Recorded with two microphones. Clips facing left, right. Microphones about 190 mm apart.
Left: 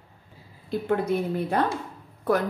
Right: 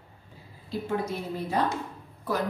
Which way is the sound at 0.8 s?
60° left (ahead or behind).